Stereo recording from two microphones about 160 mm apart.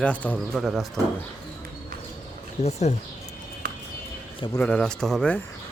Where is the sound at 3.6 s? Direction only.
85° right.